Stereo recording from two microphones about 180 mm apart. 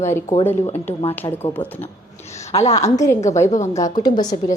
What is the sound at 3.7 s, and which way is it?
Speech, 20° left (ahead or behind).